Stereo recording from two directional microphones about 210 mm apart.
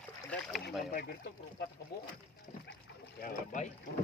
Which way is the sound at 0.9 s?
45° left (ahead or behind).